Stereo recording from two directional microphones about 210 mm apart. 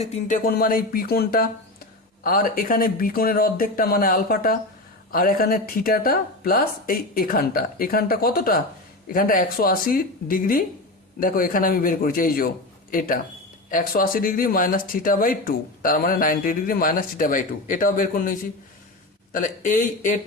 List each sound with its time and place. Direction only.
0.0 s speech: 40° left (ahead or behind)